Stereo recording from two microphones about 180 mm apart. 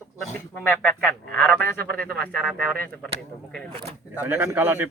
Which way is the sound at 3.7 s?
30° right (ahead or behind).